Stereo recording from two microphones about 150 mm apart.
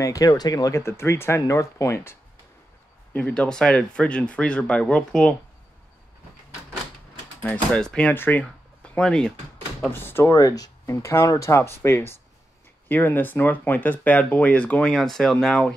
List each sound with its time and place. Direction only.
0.0 s speech: 25° left (ahead or behind); by 5.3 s 5° left (ahead or behind)
7.4 s speech: 5° left (ahead or behind)